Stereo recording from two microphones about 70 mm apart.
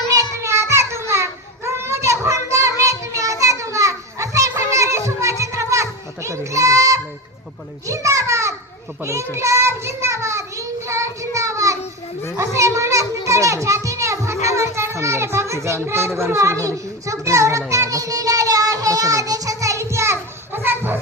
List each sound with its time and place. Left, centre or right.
0.4 s a sound: right
4.8 s children playing: right
7.9 s a sound: right
9.0 s child singing: right
12.4 s a child's voice: right
17.7 s child singing: right